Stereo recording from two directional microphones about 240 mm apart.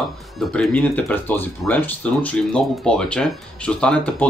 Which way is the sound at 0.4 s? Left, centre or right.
Centre.